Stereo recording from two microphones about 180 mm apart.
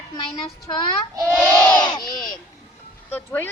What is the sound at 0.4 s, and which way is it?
Speech, 25° left (ahead or behind).